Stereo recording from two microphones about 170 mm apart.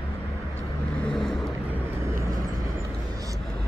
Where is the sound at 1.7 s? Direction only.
15° right (ahead or behind).